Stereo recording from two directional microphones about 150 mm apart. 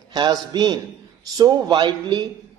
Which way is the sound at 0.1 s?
30° right (ahead or behind).